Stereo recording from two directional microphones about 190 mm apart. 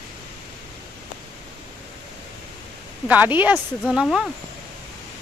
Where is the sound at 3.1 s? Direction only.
10° right (ahead or behind).